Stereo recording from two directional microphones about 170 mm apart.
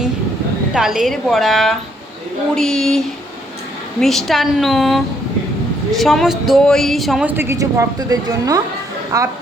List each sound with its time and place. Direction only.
0.7 s speech: 5° right (ahead or behind)
4.0 s a woman's voice: centre (ahead or behind); by 9.3 s 15° right (ahead or behind)